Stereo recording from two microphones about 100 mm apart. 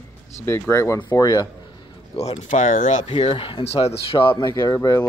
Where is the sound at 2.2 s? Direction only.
75° left (ahead or behind); by 4.5 s 60° left (ahead or behind).